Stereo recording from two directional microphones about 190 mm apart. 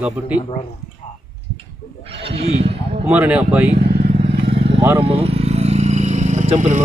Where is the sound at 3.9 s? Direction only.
30° right (ahead or behind).